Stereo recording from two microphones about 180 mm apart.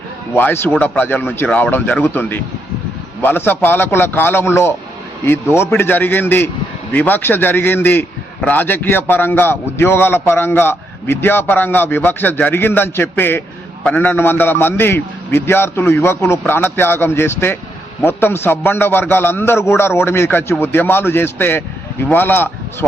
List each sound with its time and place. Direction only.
0.3 s a man's voice: 10° left (ahead or behind)